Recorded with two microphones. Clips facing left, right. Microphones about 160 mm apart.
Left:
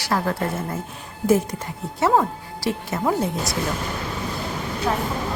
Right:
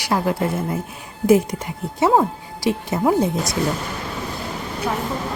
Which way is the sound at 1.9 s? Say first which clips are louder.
Right 2 dB; 15° right (ahead or behind).